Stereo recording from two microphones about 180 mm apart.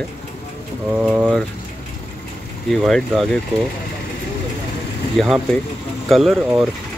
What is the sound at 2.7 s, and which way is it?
Speech, 5° left (ahead or behind).